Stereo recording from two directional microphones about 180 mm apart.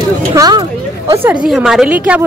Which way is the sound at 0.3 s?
20° right (ahead or behind).